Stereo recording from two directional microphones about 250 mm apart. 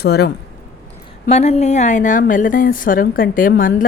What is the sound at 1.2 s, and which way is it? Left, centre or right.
Speech, left.